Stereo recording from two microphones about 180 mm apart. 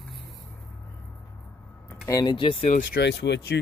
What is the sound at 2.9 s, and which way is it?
Speech, 70° left (ahead or behind).